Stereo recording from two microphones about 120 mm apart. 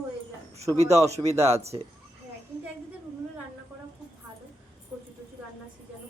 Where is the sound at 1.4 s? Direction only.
60° right (ahead or behind).